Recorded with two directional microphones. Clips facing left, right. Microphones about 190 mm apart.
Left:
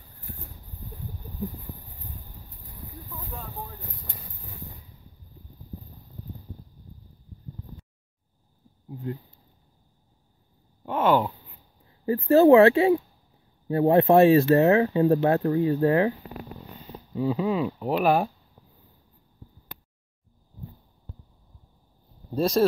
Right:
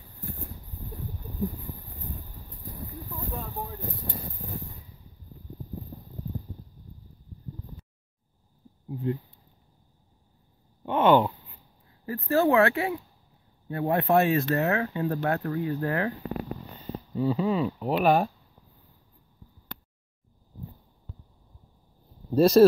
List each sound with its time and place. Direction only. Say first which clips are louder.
10.9 s a sound: right 2 dB; 5° left (ahead or behind)
12.1 s speech: left 8 dB; 25° left (ahead or behind)
17.1 s speech: left 1 dB; 5° left (ahead or behind)
22.3 s speech: right 5 dB; 5° right (ahead or behind)